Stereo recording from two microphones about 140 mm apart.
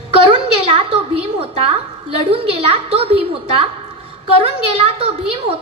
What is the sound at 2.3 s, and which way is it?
A woman's voice, 45° right (ahead or behind).